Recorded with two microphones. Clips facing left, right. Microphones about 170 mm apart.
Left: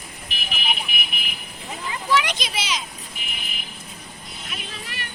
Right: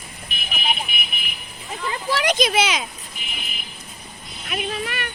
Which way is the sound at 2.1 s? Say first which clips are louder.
Right 3 dB; 40° right (ahead or behind).